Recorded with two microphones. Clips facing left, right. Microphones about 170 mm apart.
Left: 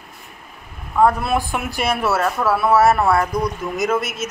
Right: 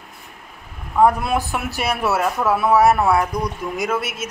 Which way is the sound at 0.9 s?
15° right (ahead or behind).